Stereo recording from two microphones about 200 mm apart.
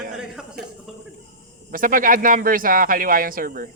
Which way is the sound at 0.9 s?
Centre (ahead or behind).